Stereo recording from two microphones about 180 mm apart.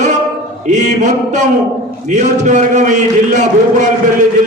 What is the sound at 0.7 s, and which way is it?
A man's voice, 40° right (ahead or behind).